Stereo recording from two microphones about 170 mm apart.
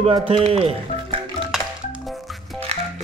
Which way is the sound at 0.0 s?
35° right (ahead or behind).